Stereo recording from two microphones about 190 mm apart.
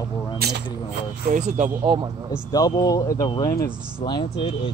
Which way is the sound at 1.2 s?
40° right (ahead or behind).